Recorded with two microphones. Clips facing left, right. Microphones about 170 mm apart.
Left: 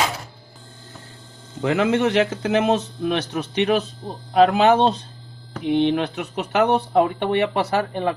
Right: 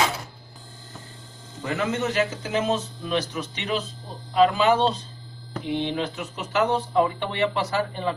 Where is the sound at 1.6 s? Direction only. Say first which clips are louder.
Left 7 dB; 80° left.